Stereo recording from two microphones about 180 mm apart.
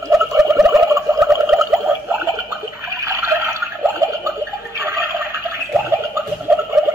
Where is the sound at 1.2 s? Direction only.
Centre (ahead or behind).